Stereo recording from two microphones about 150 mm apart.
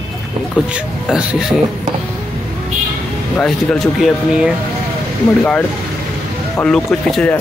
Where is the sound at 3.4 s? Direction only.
5° left (ahead or behind).